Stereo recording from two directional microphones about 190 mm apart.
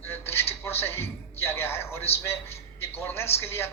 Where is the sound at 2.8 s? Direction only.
10° left (ahead or behind).